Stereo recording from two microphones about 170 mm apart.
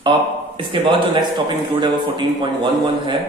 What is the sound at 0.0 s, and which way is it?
A man's voice, 30° right (ahead or behind).